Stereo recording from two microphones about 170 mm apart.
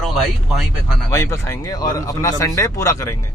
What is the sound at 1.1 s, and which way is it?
Speech, 15° left (ahead or behind).